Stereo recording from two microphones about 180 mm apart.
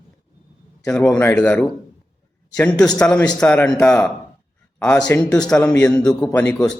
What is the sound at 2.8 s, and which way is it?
A man's voice, 5° left (ahead or behind).